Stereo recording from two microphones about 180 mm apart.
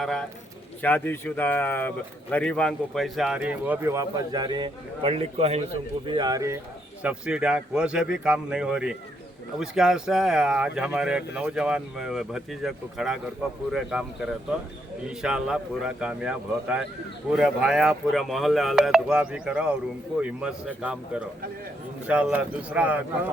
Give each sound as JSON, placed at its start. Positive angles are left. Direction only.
{"t": 0.0, "sound": "a man's voice", "side_deg": 0}
{"t": 6.1, "sound": "speech", "side_deg": -25}
{"t": 7.0, "sound": "a man's voice", "side_deg": -5}